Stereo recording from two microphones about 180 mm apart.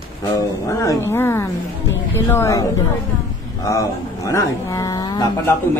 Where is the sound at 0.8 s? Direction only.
15° left (ahead or behind).